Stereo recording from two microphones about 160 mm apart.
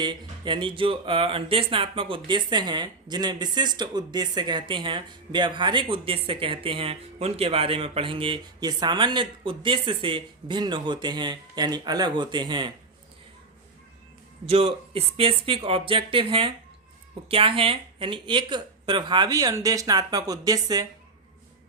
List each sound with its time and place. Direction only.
0.0 s speech: 30° right (ahead or behind)
14.4 s speech: 35° right (ahead or behind)